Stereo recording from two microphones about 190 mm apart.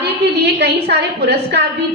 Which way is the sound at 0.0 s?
60° right (ahead or behind).